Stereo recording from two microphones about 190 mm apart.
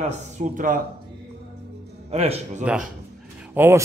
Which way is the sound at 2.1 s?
35° right (ahead or behind).